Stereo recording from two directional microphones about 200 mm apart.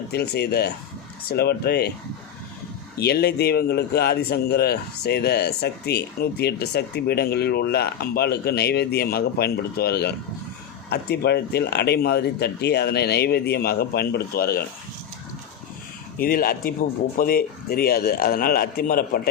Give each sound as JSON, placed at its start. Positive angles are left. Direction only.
{"t": 0.1, "sound": "speech", "side_deg": 55}
{"t": 3.0, "sound": "speech", "side_deg": 55}
{"t": 16.1, "sound": "speech", "side_deg": 45}